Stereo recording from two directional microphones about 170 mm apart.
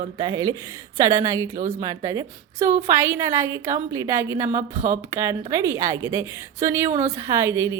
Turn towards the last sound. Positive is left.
turn(degrees=-15)  # may be behind; listen again after turning